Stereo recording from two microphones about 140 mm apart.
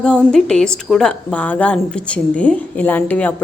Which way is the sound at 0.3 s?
5° left (ahead or behind).